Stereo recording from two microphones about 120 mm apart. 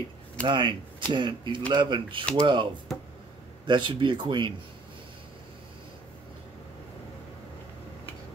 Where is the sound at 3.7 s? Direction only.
40° right (ahead or behind).